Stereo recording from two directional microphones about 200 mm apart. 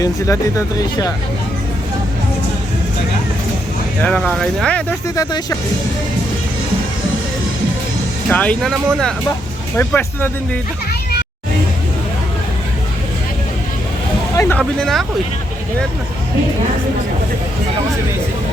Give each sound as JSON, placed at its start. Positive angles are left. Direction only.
{"t": 0.0, "sound": "speech", "side_deg": 15}
{"t": 4.0, "sound": "speech", "side_deg": 5}
{"t": 5.1, "sound": "speech", "side_deg": 20}
{"t": 8.3, "sound": "speech", "side_deg": 5}
{"t": 14.3, "sound": "a sound", "side_deg": 10}
{"t": 14.6, "sound": "speech", "side_deg": 0}